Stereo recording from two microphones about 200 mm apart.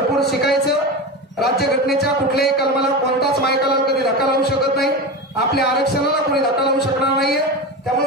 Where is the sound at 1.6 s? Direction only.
55° left (ahead or behind).